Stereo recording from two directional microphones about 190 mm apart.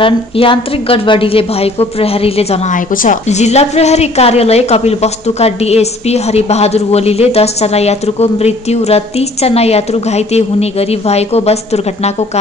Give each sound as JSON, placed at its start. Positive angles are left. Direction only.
{"t": 0.0, "sound": "a woman's voice", "side_deg": 30}
{"t": 2.9, "sound": "a woman's voice", "side_deg": 45}